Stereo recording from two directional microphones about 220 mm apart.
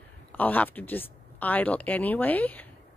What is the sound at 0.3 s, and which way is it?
Speech, 5° left (ahead or behind).